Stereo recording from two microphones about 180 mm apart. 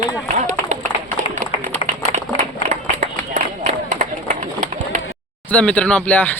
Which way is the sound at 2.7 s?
40° right (ahead or behind).